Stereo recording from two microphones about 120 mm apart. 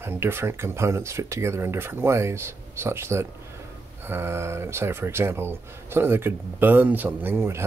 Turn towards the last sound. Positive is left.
turn(degrees=-20)  # may be behind; listen again after turning